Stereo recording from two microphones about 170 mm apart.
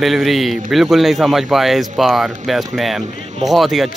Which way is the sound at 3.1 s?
40° right (ahead or behind).